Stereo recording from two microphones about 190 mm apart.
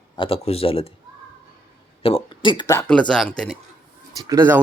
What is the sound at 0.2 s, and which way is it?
Speech, 30° left (ahead or behind).